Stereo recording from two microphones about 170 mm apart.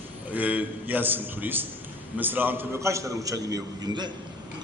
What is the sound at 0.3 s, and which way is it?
A man's voice, 10° right (ahead or behind).